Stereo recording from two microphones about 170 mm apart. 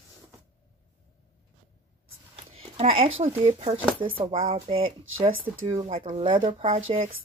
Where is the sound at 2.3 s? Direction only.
35° right (ahead or behind).